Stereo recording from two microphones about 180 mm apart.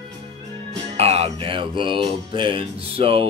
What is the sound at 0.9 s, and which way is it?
Music, 35° right (ahead or behind).